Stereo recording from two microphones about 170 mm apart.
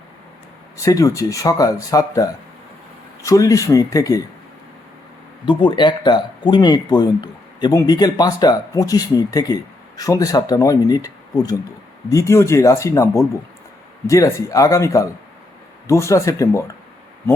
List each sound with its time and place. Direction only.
0.8 s speech: 20° left (ahead or behind)
5.5 s speech: 30° left (ahead or behind)